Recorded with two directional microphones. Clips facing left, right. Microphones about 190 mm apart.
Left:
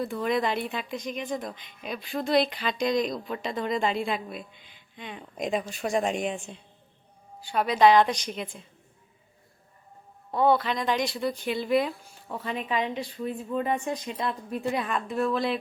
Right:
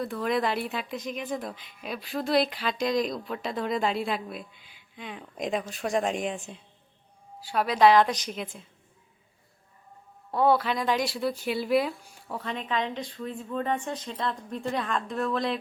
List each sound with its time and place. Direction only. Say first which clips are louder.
0.0 s speech: left 1 dB; centre (ahead or behind)
10.3 s a woman's voice: even; 5° right (ahead or behind)